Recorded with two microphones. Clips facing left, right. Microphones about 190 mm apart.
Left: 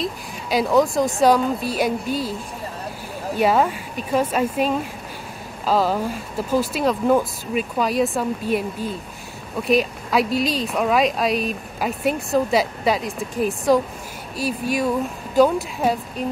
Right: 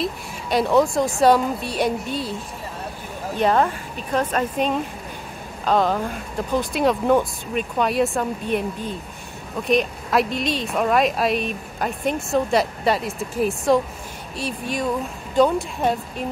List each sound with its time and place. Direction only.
0.0 s speech: centre (ahead or behind)
3.3 s a woman's voice: 5° left (ahead or behind)